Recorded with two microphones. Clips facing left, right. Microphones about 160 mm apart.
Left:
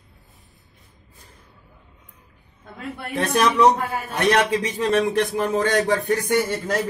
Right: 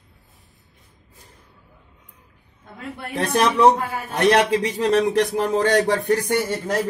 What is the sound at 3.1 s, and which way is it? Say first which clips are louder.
A man's voice: even; 30° right (ahead or behind).